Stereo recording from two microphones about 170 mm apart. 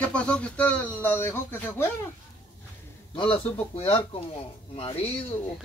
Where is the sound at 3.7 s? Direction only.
35° left (ahead or behind).